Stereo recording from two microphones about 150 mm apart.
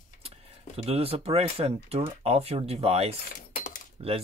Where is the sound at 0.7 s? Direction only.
40° right (ahead or behind).